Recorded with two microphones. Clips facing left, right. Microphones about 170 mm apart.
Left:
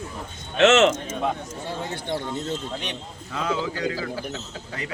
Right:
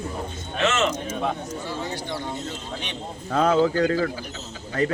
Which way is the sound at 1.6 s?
55° left (ahead or behind).